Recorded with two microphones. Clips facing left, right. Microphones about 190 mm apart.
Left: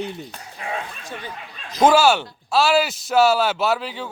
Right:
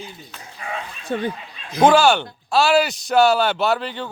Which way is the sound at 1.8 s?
5° left (ahead or behind).